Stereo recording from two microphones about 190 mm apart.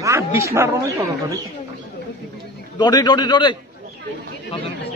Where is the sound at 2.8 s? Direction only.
20° left (ahead or behind).